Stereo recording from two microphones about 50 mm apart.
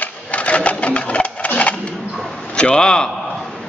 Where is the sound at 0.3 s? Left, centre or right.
Left.